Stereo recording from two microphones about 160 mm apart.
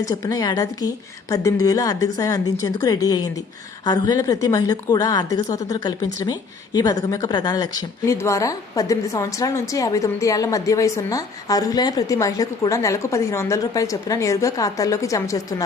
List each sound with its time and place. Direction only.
0.0 s speech: 20° left (ahead or behind)